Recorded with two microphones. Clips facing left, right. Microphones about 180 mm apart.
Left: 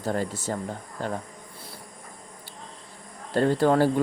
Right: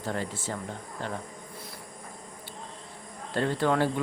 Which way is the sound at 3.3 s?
40° left (ahead or behind).